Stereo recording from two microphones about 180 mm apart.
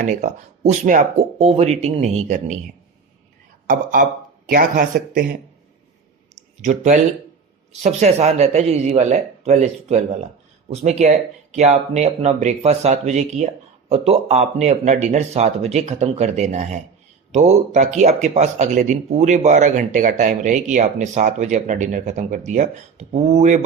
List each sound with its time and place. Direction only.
0.0 s speech: 45° right (ahead or behind)
3.7 s speech: 50° right (ahead or behind)
6.6 s speech: 40° right (ahead or behind)